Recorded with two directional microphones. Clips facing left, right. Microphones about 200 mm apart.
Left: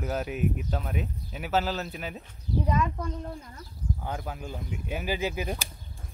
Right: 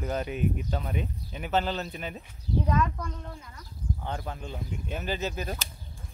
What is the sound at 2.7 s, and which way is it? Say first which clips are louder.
Speech: left 1 dB; 15° left (ahead or behind).